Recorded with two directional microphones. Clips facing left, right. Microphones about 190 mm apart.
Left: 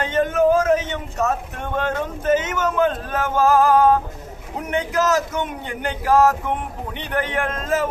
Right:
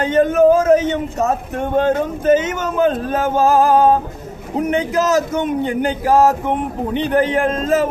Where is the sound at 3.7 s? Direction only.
20° right (ahead or behind).